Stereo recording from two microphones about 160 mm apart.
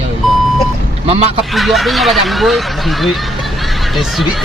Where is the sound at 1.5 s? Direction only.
Centre (ahead or behind).